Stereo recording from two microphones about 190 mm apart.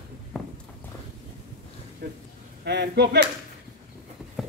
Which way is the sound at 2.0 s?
55° right (ahead or behind).